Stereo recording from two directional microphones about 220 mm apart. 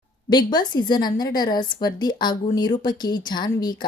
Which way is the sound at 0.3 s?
20° left (ahead or behind).